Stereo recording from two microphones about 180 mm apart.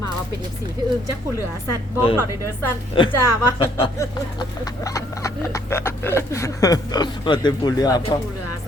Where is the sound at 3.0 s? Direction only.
30° left (ahead or behind).